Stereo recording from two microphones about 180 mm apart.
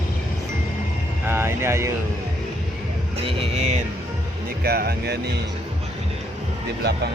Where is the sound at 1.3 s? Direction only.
15° right (ahead or behind).